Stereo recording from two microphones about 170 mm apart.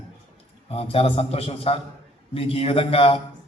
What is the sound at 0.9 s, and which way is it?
A man's voice, 35° left (ahead or behind).